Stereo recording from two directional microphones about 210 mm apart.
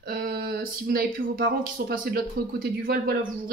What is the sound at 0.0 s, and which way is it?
A woman's voice, 45° right (ahead or behind).